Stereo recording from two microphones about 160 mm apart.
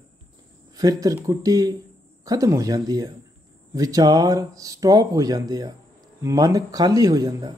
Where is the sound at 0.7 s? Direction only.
25° right (ahead or behind).